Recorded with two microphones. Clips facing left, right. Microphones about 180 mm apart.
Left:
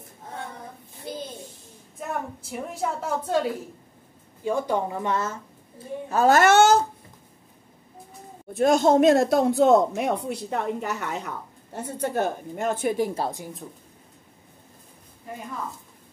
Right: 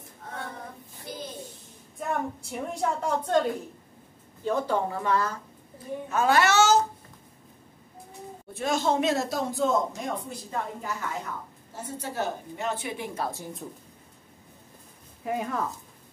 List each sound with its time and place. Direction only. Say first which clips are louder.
2.0 s a woman's voice: right 1 dB; centre (ahead or behind); by 5.4 s 20° left (ahead or behind)
6.0 s speech: left 5 dB; 40° left (ahead or behind); by 6.8 s 55° left (ahead or behind)
8.5 s speech: left 8 dB; 50° left (ahead or behind)
15.2 s a woman's voice: right 8 dB; 75° right (ahead or behind)